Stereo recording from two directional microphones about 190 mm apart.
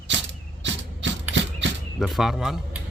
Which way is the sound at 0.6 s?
75° right (ahead or behind).